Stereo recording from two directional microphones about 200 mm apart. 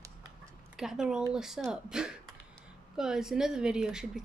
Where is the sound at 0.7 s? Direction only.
5° right (ahead or behind).